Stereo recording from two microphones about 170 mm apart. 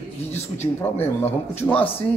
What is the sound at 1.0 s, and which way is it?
Speech, 10° left (ahead or behind).